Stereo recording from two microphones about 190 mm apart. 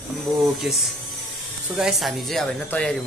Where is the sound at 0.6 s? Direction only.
Centre (ahead or behind).